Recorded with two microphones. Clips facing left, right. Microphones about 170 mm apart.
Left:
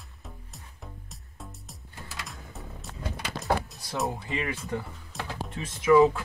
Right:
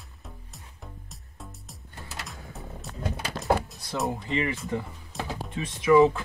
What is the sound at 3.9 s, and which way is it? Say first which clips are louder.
Speech: right 2 dB; centre (ahead or behind).